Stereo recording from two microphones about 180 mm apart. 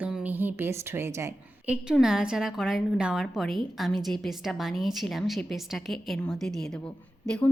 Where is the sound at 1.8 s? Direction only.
5° right (ahead or behind).